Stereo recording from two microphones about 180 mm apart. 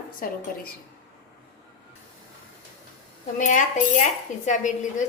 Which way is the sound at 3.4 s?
45° left (ahead or behind).